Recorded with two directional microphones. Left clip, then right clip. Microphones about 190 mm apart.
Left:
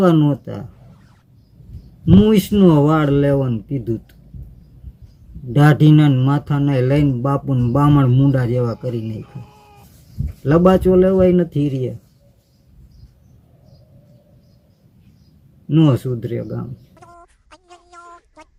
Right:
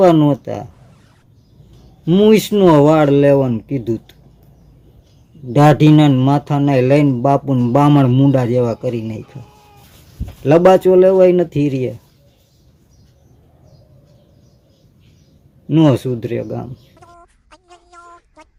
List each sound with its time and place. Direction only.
0.0 s speech: 15° left (ahead or behind)
2.0 s speech: 15° left (ahead or behind)
5.5 s speech: 15° left (ahead or behind)
9.2 s sheep: centre (ahead or behind)
10.4 s speech: 15° left (ahead or behind)
15.7 s speech: 15° left (ahead or behind)
16.9 s a sound: centre (ahead or behind)